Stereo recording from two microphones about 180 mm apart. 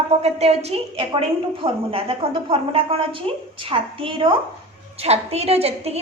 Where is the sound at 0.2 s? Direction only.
35° right (ahead or behind).